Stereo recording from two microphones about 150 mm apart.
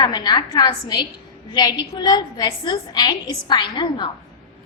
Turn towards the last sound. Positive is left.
turn(degrees=30)  # may be behind; listen again after turning